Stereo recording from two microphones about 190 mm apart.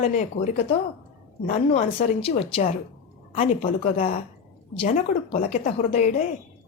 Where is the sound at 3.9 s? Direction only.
35° left (ahead or behind).